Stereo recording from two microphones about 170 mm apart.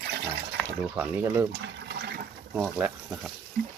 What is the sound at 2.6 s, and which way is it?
Speech, 5° right (ahead or behind).